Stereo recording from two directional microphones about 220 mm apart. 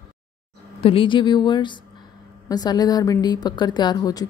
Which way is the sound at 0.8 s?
25° left (ahead or behind).